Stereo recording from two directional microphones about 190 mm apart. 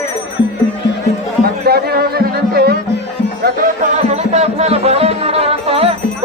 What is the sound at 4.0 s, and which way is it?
Music, 35° right (ahead or behind).